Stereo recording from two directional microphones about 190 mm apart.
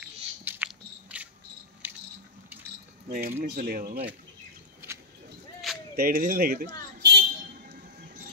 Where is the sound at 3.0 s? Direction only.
50° right (ahead or behind).